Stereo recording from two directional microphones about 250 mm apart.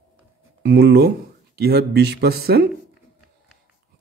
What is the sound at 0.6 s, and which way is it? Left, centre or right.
Speech, right.